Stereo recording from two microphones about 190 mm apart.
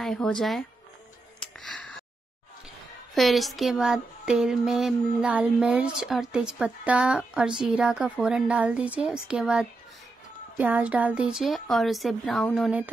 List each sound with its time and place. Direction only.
0.0 s speech: 5° left (ahead or behind)
1.4 s a sound: 5° left (ahead or behind)
3.2 s speech: centre (ahead or behind)